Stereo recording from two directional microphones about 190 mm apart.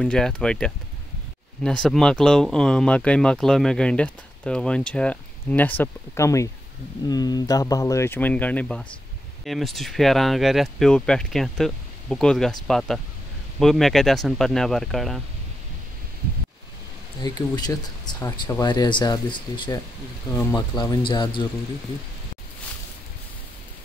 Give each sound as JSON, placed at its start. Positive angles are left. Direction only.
{"t": 0.0, "sound": "speech", "side_deg": 5}
{"t": 17.2, "sound": "speech", "side_deg": 20}